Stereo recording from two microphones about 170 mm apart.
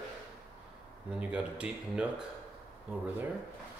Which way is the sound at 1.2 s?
5° right (ahead or behind).